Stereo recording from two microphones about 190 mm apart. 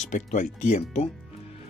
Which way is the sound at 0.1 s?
40° left (ahead or behind).